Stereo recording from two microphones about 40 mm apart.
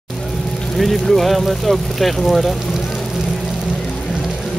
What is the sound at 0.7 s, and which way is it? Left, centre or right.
Speech, centre.